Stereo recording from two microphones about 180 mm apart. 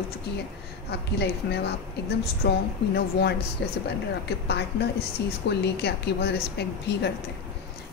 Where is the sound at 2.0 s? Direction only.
60° left (ahead or behind).